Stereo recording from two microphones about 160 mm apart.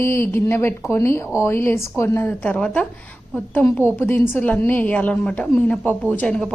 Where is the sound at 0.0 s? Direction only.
15° left (ahead or behind).